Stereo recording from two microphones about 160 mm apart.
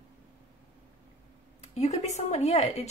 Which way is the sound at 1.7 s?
45° left (ahead or behind).